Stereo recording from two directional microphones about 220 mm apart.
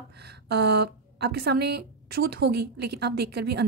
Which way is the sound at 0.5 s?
45° right (ahead or behind).